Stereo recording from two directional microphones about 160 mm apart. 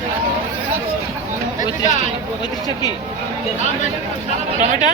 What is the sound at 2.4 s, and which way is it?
Speech, 25° left (ahead or behind).